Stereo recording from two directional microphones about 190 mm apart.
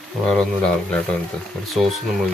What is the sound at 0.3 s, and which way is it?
Speech, 5° left (ahead or behind).